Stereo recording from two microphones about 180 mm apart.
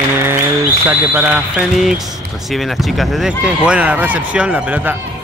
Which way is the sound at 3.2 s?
5° right (ahead or behind).